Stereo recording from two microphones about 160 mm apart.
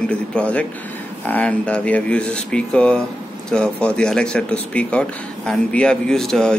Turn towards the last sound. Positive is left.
turn(degrees=5)  # may be behind; listen again after turning